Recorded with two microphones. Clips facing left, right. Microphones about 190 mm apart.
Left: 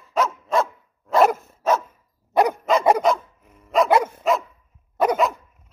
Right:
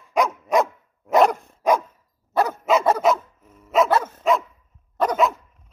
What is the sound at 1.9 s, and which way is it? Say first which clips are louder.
Dog: even; 15° left (ahead or behind).